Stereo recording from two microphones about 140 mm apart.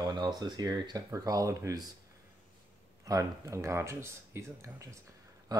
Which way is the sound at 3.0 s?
25° right (ahead or behind).